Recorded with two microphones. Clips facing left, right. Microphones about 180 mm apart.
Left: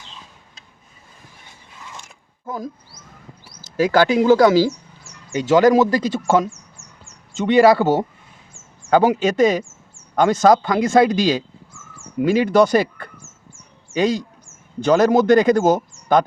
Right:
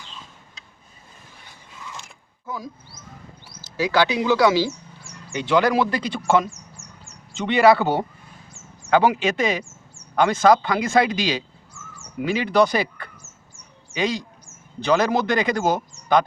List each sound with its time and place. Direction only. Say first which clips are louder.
3.6 s a man's voice: left 4 dB; 50° left (ahead or behind)
6.5 s a sound: right 1 dB; 40° right (ahead or behind)
7.3 s a man's voice: left 3 dB; 40° left (ahead or behind)